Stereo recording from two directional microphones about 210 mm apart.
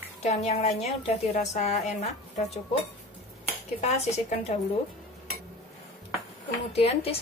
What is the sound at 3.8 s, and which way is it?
Speech, 30° left (ahead or behind).